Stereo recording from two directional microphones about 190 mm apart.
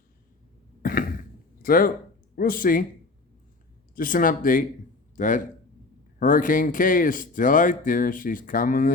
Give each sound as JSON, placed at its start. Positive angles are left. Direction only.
{"t": 0.8, "sound": "cough", "side_deg": 50}
{"t": 1.6, "sound": "speech", "side_deg": 50}
{"t": 3.9, "sound": "a man's voice", "side_deg": 45}